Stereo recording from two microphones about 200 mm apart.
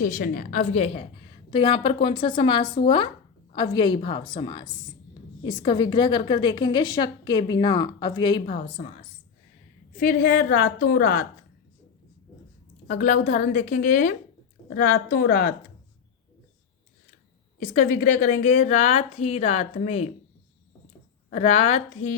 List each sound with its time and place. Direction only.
0.0 s a woman's voice: 45° left (ahead or behind)
10.0 s a woman's voice: 45° left (ahead or behind)
12.9 s a woman's voice: 40° left (ahead or behind)
17.6 s a woman's voice: 35° left (ahead or behind)
21.2 s a woman's voice: 35° left (ahead or behind)